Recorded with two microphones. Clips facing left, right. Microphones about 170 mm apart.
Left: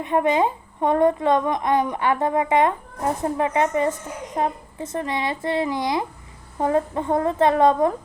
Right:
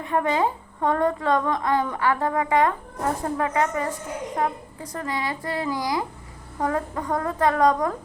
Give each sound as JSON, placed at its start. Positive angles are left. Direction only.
{"t": 0.0, "sound": "a woman's voice", "side_deg": 20}